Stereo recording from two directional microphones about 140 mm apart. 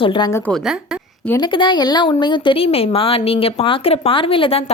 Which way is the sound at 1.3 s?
35° left (ahead or behind).